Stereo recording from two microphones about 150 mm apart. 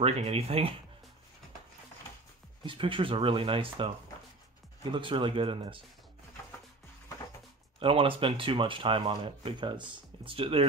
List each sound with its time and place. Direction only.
0.0 s speech: 40° right (ahead or behind)
2.6 s speech: 35° right (ahead or behind)
4.9 s speech: 35° right (ahead or behind)
7.8 s speech: 35° right (ahead or behind)